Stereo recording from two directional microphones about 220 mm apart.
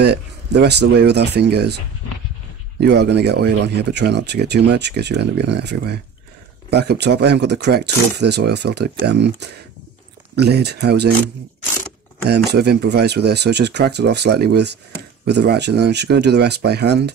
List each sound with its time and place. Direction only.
0.0 s speech: 50° right (ahead or behind)
2.8 s speech: 50° right (ahead or behind)
12.3 s speech: 50° right (ahead or behind)